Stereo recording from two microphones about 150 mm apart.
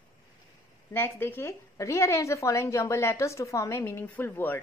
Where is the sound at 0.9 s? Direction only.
15° left (ahead or behind).